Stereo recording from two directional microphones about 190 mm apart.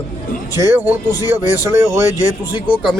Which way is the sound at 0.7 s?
10° right (ahead or behind).